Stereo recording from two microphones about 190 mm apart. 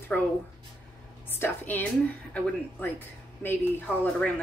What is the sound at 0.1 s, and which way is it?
Speech, 5° left (ahead or behind).